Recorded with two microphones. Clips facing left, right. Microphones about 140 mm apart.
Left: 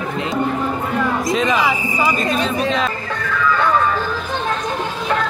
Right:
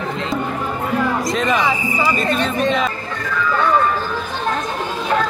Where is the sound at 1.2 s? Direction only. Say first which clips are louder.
Left 1 dB; centre (ahead or behind).